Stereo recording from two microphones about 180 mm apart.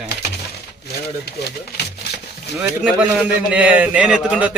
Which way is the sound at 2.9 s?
5° right (ahead or behind).